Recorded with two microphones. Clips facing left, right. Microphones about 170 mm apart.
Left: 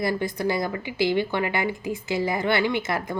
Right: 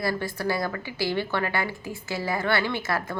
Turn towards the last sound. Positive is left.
turn(degrees=20)  # may be behind; listen again after turning